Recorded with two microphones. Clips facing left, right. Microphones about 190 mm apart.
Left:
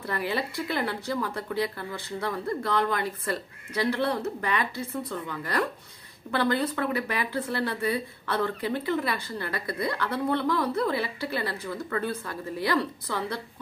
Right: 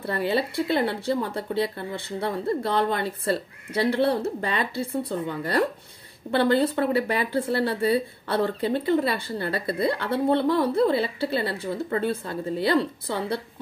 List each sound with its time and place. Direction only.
0.0 s speech: 30° right (ahead or behind)